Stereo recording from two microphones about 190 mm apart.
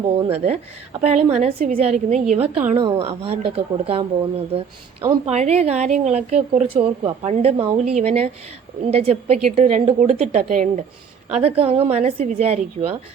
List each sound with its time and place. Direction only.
0.0 s speech: 30° right (ahead or behind)
2.7 s speech: 30° right (ahead or behind)